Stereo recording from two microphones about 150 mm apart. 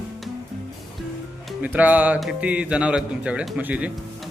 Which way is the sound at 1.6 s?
10° right (ahead or behind).